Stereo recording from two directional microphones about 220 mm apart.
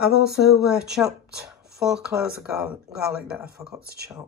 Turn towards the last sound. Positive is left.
turn(degrees=-45)  # may be behind; listen again after turning